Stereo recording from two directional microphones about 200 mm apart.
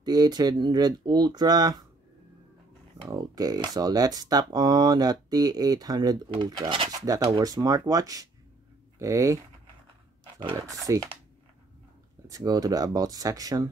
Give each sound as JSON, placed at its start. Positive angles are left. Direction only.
{"t": 0.0, "sound": "speech", "side_deg": -20}
{"t": 3.0, "sound": "speech", "side_deg": -20}
{"t": 10.5, "sound": "speech", "side_deg": -15}
{"t": 12.3, "sound": "speech", "side_deg": -15}